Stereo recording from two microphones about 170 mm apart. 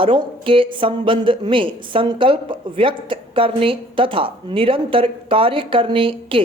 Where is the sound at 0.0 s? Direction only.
30° right (ahead or behind).